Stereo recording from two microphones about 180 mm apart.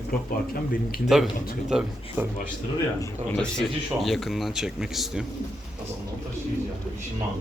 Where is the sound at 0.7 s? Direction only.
55° left (ahead or behind).